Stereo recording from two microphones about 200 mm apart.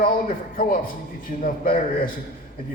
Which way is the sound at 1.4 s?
40° left (ahead or behind).